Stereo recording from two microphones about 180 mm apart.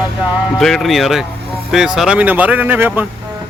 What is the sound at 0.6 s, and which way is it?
Speech, centre (ahead or behind).